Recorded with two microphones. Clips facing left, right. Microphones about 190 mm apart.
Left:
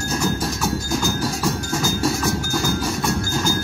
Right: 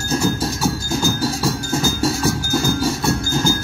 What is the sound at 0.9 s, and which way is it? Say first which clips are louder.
Music: right 2 dB; 30° right (ahead or behind).